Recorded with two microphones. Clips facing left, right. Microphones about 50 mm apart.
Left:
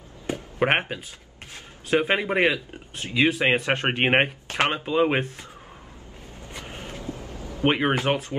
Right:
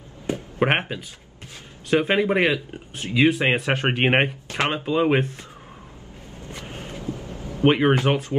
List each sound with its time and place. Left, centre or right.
0.6 s speech: centre
1.9 s speech: centre
4.5 s speech: left
4.7 s speech: centre
7.6 s speech: centre